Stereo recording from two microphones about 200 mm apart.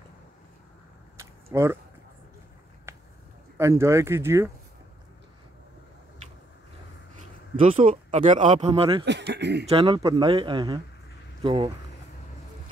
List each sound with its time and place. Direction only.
1.1 s a sound: 15° right (ahead or behind)
2.9 s a sound: 15° right (ahead or behind)
3.5 s speech: 15° right (ahead or behind)
7.5 s speech: 40° right (ahead or behind)
9.0 s speech: 60° right (ahead or behind)
9.7 s speech: 30° right (ahead or behind)